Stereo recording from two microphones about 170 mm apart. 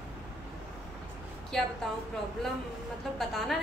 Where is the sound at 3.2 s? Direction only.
Centre (ahead or behind).